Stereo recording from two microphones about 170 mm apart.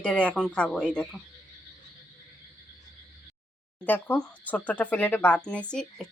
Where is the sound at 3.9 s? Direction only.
10° left (ahead or behind).